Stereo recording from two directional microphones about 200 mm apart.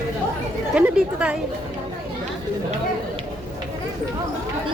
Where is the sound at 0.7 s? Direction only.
5° right (ahead or behind).